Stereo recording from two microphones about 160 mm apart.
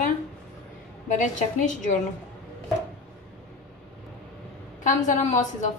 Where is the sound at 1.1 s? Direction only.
50° left (ahead or behind).